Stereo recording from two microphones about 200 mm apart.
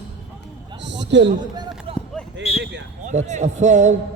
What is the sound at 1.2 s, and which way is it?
Speech, 20° right (ahead or behind).